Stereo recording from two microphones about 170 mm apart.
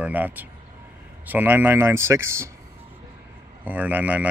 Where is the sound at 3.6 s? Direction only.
10° right (ahead or behind).